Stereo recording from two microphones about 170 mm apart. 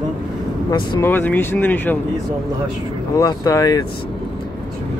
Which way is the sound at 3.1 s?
20° left (ahead or behind).